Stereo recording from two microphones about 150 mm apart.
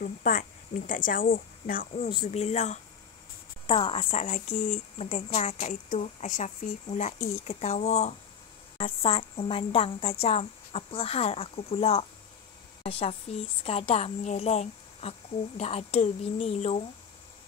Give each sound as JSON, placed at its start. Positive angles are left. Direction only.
{"t": 0.0, "sound": "speech", "side_deg": 65}
{"t": 1.9, "sound": "speech", "side_deg": 50}
{"t": 3.6, "sound": "a woman's voice", "side_deg": 35}